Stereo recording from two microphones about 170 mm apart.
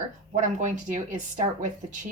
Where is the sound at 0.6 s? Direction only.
45° right (ahead or behind).